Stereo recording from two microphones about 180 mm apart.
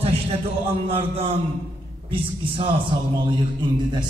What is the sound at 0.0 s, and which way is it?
A man's voice, 35° right (ahead or behind).